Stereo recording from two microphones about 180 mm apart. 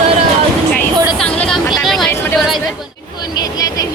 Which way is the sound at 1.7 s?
Centre (ahead or behind).